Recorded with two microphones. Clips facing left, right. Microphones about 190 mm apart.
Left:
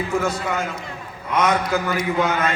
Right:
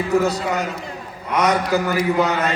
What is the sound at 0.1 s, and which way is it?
A man's voice, 35° right (ahead or behind).